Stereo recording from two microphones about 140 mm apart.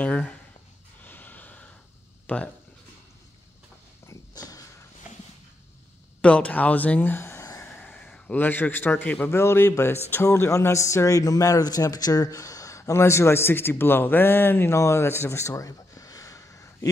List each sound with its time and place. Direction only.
0.0 s speech: 10° left (ahead or behind)
1.0 s snort: 10° left (ahead or behind)
2.2 s speech: 10° left (ahead or behind)
4.0 s dog: 25° left (ahead or behind)
6.2 s a man's voice: 10° left (ahead or behind)